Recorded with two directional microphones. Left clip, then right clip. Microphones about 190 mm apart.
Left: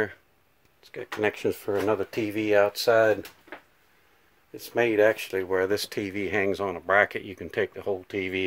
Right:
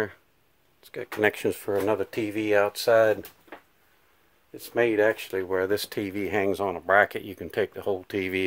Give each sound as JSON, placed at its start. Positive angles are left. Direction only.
{"t": 0.8, "sound": "speech", "side_deg": -15}
{"t": 4.6, "sound": "speech", "side_deg": 0}
{"t": 7.9, "sound": "speech", "side_deg": -20}